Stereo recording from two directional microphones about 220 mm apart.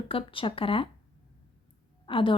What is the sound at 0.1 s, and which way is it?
Speech, 25° left (ahead or behind).